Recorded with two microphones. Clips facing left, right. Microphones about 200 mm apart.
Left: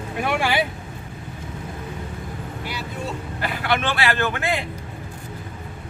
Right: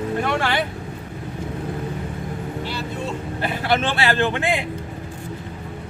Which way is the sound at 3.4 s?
25° right (ahead or behind).